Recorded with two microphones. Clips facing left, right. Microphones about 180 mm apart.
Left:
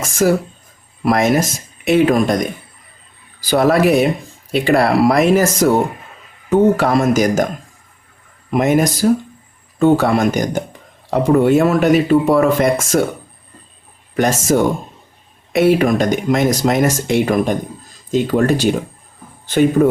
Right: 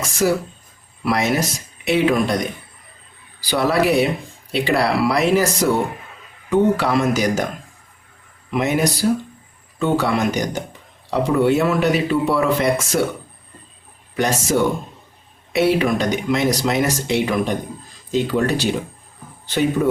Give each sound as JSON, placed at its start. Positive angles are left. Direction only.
{"t": 0.0, "sound": "a man's voice", "side_deg": 50}
{"t": 3.4, "sound": "a man's voice", "side_deg": 45}
{"t": 8.4, "sound": "a man's voice", "side_deg": 45}
{"t": 14.2, "sound": "a man's voice", "side_deg": 45}